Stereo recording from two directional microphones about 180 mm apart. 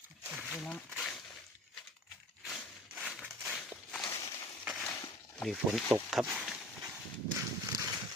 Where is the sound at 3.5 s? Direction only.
5° left (ahead or behind).